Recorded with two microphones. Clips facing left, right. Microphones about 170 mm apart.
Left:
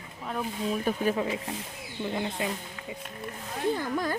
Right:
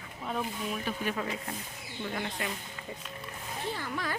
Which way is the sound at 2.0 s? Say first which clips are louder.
Left 5 dB; 20° left (ahead or behind).